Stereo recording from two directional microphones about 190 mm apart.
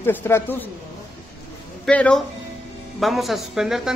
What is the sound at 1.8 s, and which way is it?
A woman's voice, 5° left (ahead or behind).